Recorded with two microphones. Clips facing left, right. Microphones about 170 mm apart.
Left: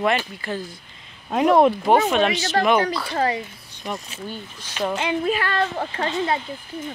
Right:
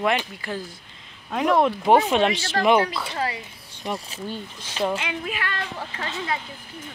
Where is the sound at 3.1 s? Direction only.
35° left (ahead or behind).